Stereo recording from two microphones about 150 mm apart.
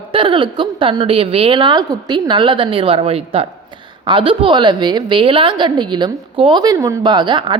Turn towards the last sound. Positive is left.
turn(degrees=-30)  # may be behind; listen again after turning